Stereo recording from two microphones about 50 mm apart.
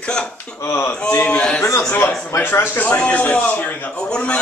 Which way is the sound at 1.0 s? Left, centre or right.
Left.